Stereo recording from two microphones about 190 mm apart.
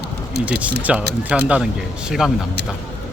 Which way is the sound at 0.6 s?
5° right (ahead or behind).